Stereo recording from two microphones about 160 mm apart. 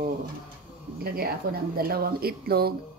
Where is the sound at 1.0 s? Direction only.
70° right (ahead or behind).